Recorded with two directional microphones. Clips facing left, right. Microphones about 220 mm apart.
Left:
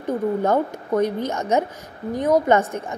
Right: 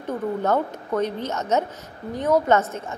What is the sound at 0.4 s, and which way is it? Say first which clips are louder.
A woman's voice: left 2 dB; 10° left (ahead or behind).